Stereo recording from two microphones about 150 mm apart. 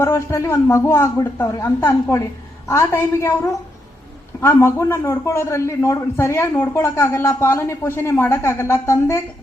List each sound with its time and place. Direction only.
0.0 s a woman's voice: 20° left (ahead or behind)